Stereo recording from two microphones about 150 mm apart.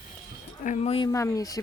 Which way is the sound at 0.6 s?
45° left (ahead or behind).